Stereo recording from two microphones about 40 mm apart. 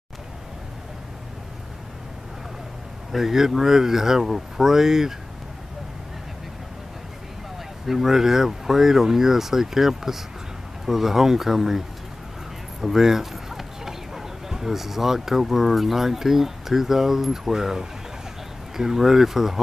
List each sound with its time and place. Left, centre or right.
3.1 s speech: centre
7.8 s speech: centre
12.8 s speech: centre